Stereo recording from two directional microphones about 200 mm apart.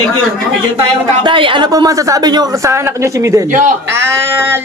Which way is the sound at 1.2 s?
25° right (ahead or behind).